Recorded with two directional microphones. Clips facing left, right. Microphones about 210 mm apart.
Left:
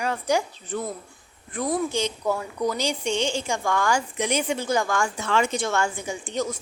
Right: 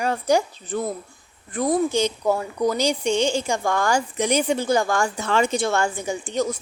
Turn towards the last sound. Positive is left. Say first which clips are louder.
# right 4 dB
turn(degrees=-40)  # may be behind; listen again after turning